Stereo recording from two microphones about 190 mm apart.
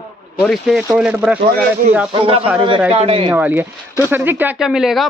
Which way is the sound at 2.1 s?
30° right (ahead or behind).